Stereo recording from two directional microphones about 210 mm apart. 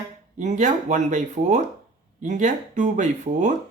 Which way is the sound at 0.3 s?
35° right (ahead or behind).